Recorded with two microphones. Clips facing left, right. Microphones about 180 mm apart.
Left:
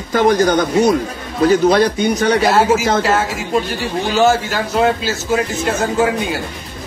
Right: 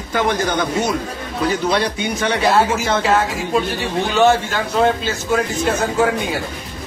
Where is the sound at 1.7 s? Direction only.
40° left (ahead or behind).